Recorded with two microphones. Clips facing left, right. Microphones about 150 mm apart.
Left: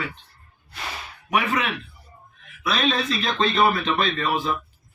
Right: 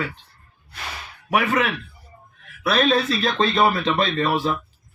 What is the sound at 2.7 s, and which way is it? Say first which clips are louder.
A man's voice: right 4 dB; 45° right (ahead or behind).